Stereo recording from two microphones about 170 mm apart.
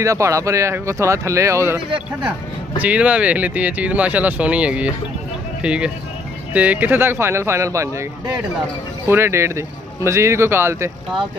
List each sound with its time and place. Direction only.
0.0 s speech: 20° right (ahead or behind)
2.8 s speech: 10° right (ahead or behind)